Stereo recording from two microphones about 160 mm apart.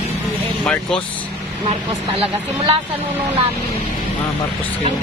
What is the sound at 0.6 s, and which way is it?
Speech, 5° left (ahead or behind).